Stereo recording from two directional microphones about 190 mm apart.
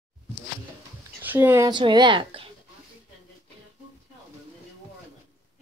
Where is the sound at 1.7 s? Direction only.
25° right (ahead or behind).